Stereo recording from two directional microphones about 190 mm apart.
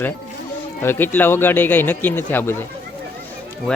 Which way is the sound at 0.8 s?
10° left (ahead or behind).